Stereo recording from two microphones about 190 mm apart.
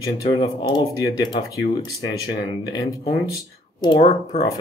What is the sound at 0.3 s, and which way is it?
Speech, 25° left (ahead or behind).